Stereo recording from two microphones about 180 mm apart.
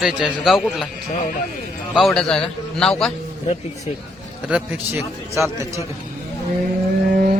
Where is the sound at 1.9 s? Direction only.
Centre (ahead or behind).